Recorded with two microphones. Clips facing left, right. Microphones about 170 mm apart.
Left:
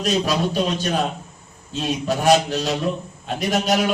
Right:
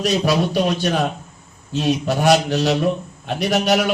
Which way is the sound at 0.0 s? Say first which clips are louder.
Right 2 dB; 70° right (ahead or behind).